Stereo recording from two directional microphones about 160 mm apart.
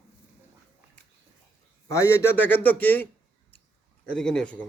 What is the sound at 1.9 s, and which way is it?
A man's voice, 20° left (ahead or behind).